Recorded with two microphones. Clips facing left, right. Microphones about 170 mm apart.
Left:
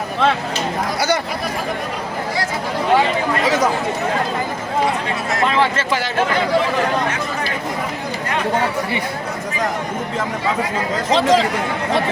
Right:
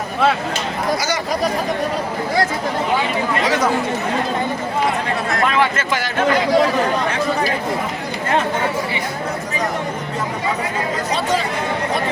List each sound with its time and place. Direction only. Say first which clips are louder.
5.5 s speech: even; 30° left (ahead or behind)
11.1 s speech: left 7 dB; 90° left